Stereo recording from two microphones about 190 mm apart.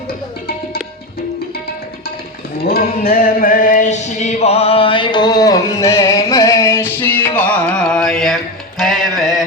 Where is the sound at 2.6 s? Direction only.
50° left (ahead or behind); by 8.4 s centre (ahead or behind).